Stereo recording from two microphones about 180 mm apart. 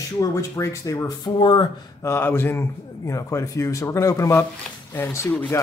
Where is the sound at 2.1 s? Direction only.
10° left (ahead or behind).